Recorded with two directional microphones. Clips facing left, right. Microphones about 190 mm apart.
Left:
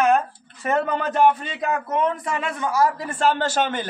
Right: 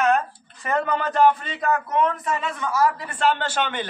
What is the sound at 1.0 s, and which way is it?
A man's voice, 10° left (ahead or behind).